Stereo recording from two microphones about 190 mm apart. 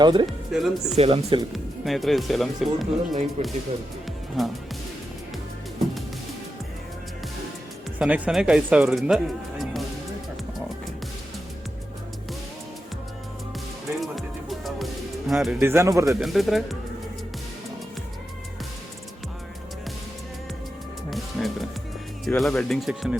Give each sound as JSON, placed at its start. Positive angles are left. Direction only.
{"t": 0.0, "sound": "speech", "side_deg": -25}
{"t": 0.3, "sound": "speech", "side_deg": 0}
{"t": 0.9, "sound": "speech", "side_deg": -30}
{"t": 1.5, "sound": "speech", "side_deg": 0}
{"t": 3.4, "sound": "speech", "side_deg": -35}
{"t": 4.4, "sound": "speech", "side_deg": 0}
{"t": 7.9, "sound": "speech", "side_deg": -10}
{"t": 15.3, "sound": "speech", "side_deg": 0}
{"t": 15.6, "sound": "speech", "side_deg": -15}
{"t": 16.0, "sound": "speech", "side_deg": 0}
{"t": 21.1, "sound": "music", "side_deg": 0}
{"t": 22.4, "sound": "speech", "side_deg": 0}